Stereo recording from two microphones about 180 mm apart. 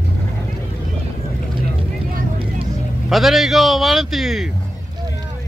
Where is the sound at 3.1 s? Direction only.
Centre (ahead or behind).